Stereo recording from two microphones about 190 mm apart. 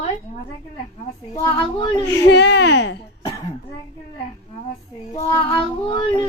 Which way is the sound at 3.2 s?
20° left (ahead or behind).